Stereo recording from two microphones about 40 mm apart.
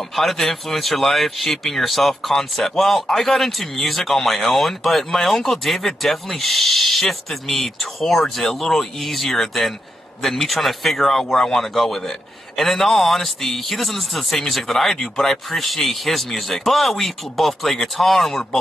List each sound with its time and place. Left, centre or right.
0.1 s a man's voice: centre
11.3 s speech: centre
11.6 s a man's voice: centre
15.0 s speech: centre
15.5 s a man's voice: centre